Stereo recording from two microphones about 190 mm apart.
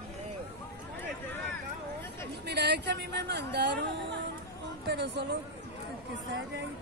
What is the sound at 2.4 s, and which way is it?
Speech, 60° right (ahead or behind).